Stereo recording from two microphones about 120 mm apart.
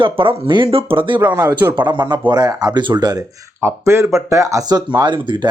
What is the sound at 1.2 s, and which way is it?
Speech, 15° right (ahead or behind).